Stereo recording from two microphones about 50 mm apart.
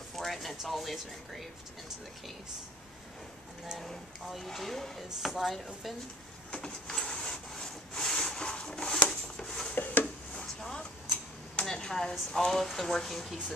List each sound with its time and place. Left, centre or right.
0.1 s a sound: centre
0.7 s speech: centre
3.7 s speech: centre
6.5 s wood: centre
9.8 s a sound: left
10.3 s vehicle: centre
11.6 s speech: centre